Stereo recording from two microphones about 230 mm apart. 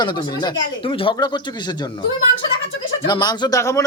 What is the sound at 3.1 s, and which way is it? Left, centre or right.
Speech, centre.